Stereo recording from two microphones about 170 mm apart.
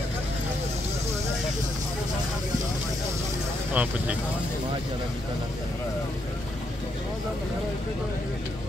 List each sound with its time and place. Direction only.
3.7 s speech: 10° right (ahead or behind)